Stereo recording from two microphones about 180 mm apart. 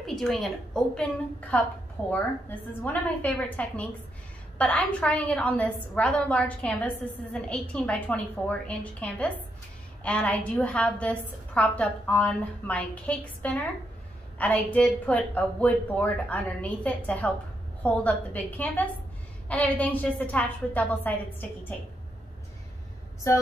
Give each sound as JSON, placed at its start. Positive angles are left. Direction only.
{"t": 0.0, "sound": "a woman's voice", "side_deg": 0}